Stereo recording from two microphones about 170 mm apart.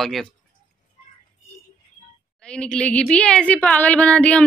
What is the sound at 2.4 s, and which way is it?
Speech, 5° left (ahead or behind).